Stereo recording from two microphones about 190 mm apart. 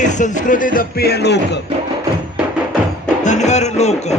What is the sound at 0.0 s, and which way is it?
Music, 40° left (ahead or behind).